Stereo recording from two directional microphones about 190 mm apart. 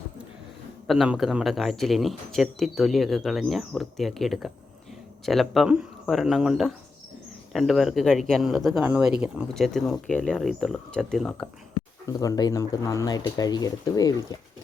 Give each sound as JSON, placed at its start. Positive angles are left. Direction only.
{"t": 0.9, "sound": "speech", "side_deg": -5}
{"t": 12.0, "sound": "speech", "side_deg": 15}